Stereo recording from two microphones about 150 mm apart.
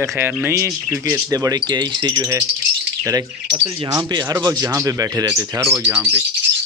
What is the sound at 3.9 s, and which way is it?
Speech, 25° right (ahead or behind).